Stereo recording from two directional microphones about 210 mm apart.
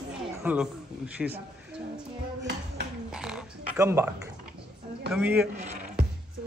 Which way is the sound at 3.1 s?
5° right (ahead or behind).